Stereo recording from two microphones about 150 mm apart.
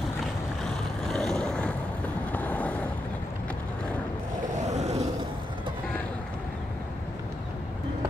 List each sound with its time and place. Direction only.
1.1 s boat: 5° left (ahead or behind)
2.3 s vehicle: 10° left (ahead or behind)
4.6 s a sound: 50° right (ahead or behind)